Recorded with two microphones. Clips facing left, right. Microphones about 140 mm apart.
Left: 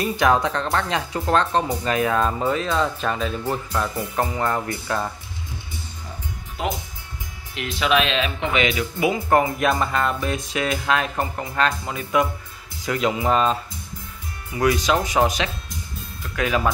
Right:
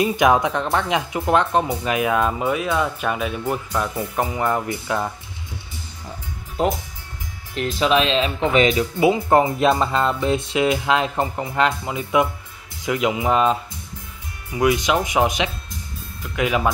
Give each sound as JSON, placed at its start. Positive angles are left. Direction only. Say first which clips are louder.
{"t": 0.0, "sound": "speech", "louder": "right 2 dB", "side_deg": -15}
{"t": 7.5, "sound": "speech", "louder": "right 2 dB", "side_deg": -35}